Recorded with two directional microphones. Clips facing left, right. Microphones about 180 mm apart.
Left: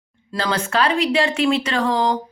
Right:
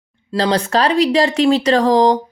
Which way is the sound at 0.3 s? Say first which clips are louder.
Right 5 dB; 35° right (ahead or behind).